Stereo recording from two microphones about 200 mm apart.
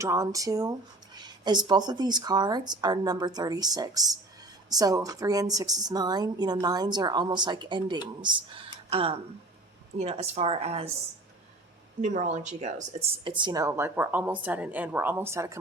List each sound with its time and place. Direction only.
0.0 s a woman's voice: 15° right (ahead or behind)
12.0 s speech: 40° right (ahead or behind); by 15.5 s 15° right (ahead or behind)